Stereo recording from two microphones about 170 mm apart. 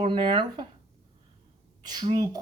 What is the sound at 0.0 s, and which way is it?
Speech, 30° right (ahead or behind).